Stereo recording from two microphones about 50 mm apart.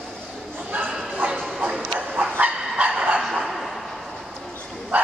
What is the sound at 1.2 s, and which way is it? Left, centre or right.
Bow-wow, right.